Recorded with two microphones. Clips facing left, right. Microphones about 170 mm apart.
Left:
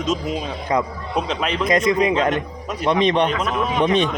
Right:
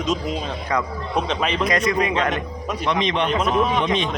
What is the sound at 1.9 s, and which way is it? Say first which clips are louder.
Speech: left 3 dB; 25° left (ahead or behind).